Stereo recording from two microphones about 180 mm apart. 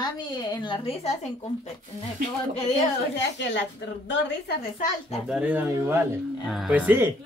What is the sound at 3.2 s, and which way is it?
Speech, 75° left (ahead or behind).